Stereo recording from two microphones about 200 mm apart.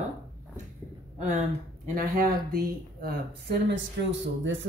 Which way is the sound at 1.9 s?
45° right (ahead or behind).